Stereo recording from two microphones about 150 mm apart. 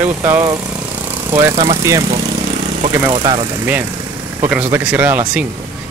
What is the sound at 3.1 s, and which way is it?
Speech, 30° right (ahead or behind).